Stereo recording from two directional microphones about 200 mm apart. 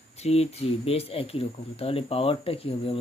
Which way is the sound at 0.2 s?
30° left (ahead or behind).